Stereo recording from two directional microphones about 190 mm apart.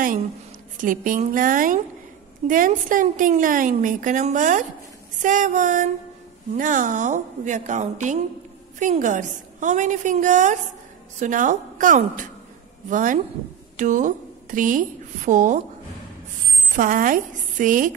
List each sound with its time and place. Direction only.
0.7 s a woman's voice: 45° right (ahead or behind)
16.7 s a woman's voice: 45° right (ahead or behind)